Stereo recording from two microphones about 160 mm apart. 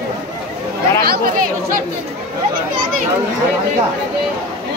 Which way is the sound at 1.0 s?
75° right (ahead or behind).